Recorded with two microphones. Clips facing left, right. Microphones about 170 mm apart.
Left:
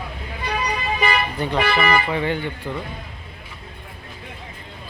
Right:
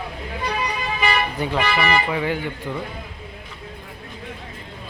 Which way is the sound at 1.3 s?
10° right (ahead or behind).